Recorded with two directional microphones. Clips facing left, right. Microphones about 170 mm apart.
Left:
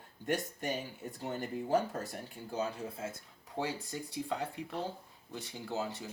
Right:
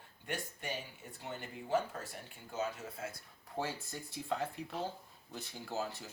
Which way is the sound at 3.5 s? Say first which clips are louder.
Left 3 dB; 15° left (ahead or behind).